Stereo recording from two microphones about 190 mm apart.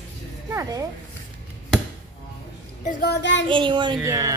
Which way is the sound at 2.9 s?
55° left (ahead or behind).